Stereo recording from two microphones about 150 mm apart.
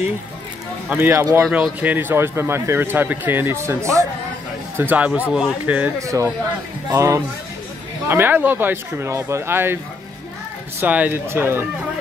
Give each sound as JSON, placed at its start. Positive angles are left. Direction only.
{"t": 0.8, "sound": "speech", "side_deg": -15}
{"t": 5.9, "sound": "speech", "side_deg": -20}
{"t": 10.8, "sound": "speech", "side_deg": -10}